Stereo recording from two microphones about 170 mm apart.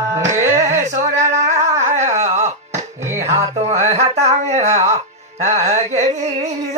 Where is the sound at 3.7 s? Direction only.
40° right (ahead or behind).